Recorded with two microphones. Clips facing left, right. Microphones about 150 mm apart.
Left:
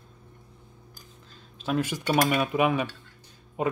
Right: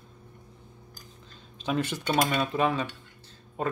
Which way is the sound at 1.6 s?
5° left (ahead or behind).